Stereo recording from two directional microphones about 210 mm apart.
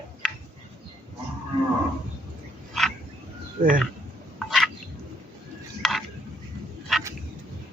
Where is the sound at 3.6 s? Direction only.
40° right (ahead or behind).